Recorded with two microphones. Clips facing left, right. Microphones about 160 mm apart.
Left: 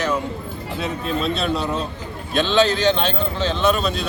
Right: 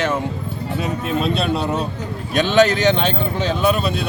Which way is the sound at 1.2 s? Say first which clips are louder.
Right 2 dB; 5° right (ahead or behind).